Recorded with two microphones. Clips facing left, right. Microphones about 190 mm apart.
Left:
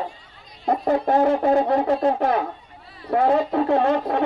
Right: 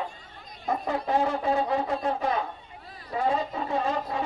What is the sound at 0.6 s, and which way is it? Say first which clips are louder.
Speech: left 8 dB; 55° left (ahead or behind).